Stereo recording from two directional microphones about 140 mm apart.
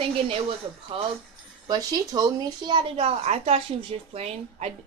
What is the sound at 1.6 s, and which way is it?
Speech, 30° right (ahead or behind).